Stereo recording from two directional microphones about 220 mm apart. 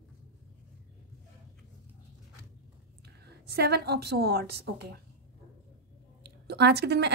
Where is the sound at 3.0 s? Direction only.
50° right (ahead or behind).